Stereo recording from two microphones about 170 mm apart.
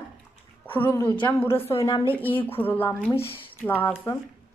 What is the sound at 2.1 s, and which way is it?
A woman's voice, 10° left (ahead or behind).